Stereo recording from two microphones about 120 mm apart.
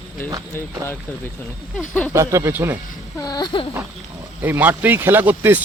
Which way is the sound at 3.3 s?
35° left (ahead or behind).